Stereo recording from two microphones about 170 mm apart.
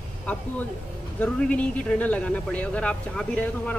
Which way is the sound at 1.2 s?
5° left (ahead or behind).